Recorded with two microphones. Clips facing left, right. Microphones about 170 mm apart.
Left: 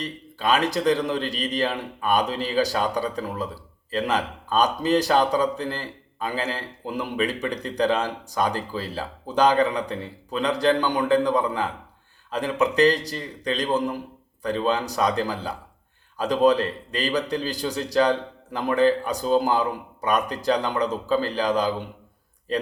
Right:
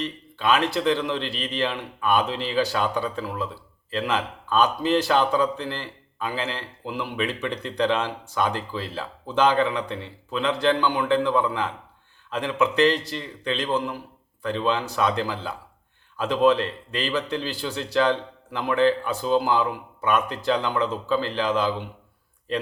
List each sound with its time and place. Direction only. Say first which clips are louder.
0.0 s a man's voice: right 1 dB; 40° left (ahead or behind)